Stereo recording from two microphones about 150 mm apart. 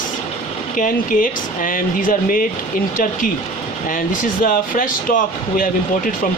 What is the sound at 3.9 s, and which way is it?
Speech, 70° left (ahead or behind).